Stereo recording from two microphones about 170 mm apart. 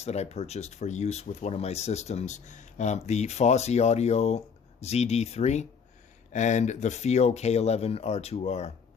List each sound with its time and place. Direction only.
0.0 s speech: 40° left (ahead or behind)